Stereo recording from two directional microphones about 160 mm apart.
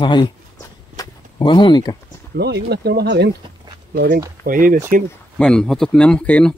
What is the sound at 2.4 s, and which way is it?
Speech, 90° right.